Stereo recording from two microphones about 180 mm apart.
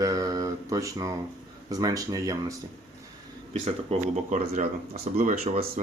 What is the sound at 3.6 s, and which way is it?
Speech, 40° right (ahead or behind).